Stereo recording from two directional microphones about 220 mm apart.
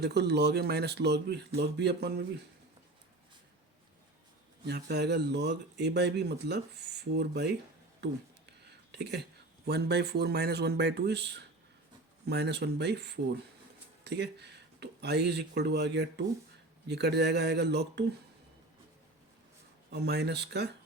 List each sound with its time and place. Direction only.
0.0 s speech: 50° right (ahead or behind)
4.6 s speech: 50° right (ahead or behind)
8.9 s speech: 50° right (ahead or behind)
19.9 s speech: 50° right (ahead or behind)